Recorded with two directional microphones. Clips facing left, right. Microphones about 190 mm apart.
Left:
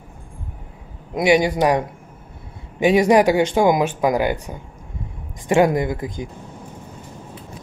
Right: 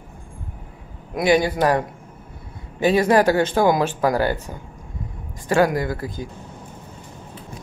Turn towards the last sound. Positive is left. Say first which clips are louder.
# left 2 dB
turn(degrees=20)  # may be behind; listen again after turning